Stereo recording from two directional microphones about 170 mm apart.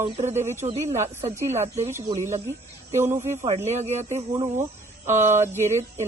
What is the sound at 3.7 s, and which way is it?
Speech, 40° right (ahead or behind).